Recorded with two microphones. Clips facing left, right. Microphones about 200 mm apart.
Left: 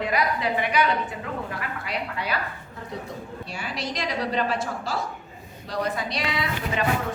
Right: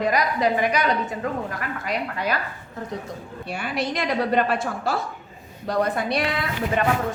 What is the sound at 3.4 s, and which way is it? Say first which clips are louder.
A woman's voice: right 7 dB; 55° right (ahead or behind).